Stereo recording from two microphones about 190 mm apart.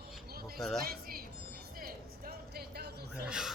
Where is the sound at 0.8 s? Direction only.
55° right (ahead or behind).